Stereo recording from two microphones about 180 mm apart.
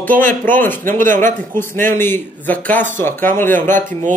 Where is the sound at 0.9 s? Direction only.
50° right (ahead or behind).